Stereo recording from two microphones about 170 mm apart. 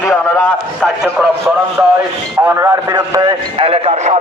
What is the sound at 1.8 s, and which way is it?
A man's voice, 15° right (ahead or behind).